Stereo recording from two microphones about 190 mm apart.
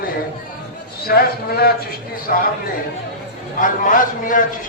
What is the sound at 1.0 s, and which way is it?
A man's voice, 55° left (ahead or behind).